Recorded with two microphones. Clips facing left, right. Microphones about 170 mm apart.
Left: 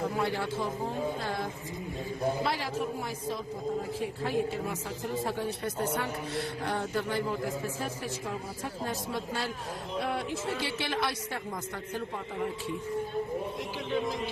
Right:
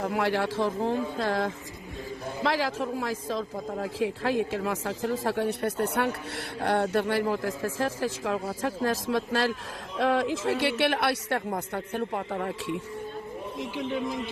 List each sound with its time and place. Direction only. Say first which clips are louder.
0.0 s a man's voice: right 4 dB; 75° right (ahead or behind)